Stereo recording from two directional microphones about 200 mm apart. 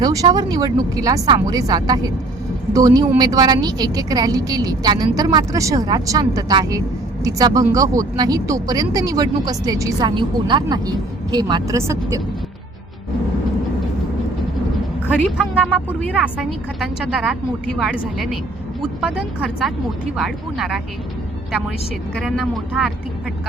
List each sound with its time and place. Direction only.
0.0 s speech: 20° right (ahead or behind)
15.0 s a woman's voice: centre (ahead or behind)
22.1 s a woman's voice: centre (ahead or behind)